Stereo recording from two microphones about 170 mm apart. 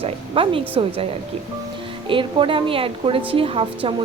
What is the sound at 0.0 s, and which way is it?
Speech, 30° right (ahead or behind).